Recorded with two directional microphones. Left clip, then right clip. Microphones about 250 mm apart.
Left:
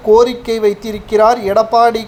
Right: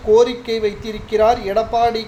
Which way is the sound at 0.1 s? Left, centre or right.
Left.